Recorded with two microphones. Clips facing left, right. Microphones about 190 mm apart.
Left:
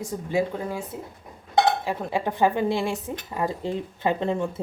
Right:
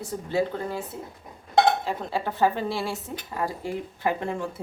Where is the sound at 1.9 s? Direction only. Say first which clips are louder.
Left 2 dB; 15° left (ahead or behind).